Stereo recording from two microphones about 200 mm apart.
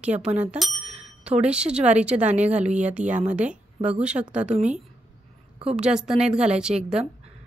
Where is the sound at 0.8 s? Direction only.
35° right (ahead or behind).